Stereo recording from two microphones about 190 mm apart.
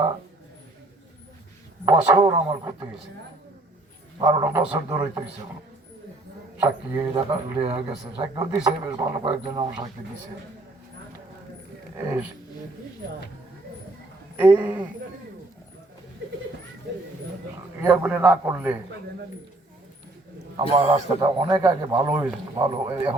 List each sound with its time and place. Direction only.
1.8 s speech: 20° right (ahead or behind)
4.2 s a man's voice: 20° right (ahead or behind)
6.9 s speech: 25° right (ahead or behind)
14.3 s a man's voice: 10° right (ahead or behind)
17.8 s a man's voice: 10° right (ahead or behind)
20.6 s speech: 30° right (ahead or behind)
21.2 s a man's voice: 15° right (ahead or behind)
22.0 s a man's voice: 10° right (ahead or behind)
22.5 s speech: 20° right (ahead or behind)